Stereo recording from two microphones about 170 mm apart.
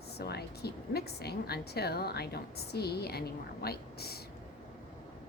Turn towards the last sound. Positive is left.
turn(degrees=65)  # may be behind; listen again after turning